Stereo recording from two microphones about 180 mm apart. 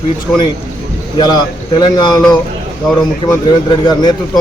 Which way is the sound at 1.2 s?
25° left (ahead or behind).